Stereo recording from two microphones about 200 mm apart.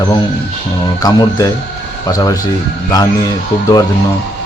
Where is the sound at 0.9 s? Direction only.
20° left (ahead or behind).